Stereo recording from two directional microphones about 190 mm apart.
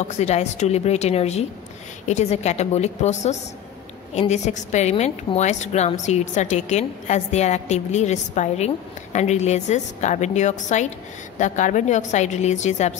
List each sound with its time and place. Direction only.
0.1 s a woman's voice: 35° left (ahead or behind)